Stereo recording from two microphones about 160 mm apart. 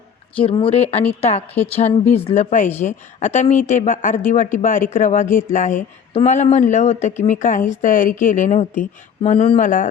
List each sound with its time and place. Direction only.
0.3 s speech: 35° left (ahead or behind); by 9.9 s 55° left (ahead or behind)